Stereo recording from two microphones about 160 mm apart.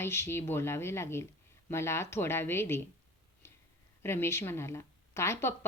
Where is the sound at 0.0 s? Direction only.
15° left (ahead or behind).